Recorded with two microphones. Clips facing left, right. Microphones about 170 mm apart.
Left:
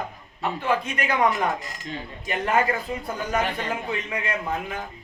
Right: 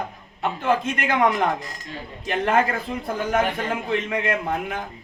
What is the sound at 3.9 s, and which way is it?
Speech, 55° right (ahead or behind).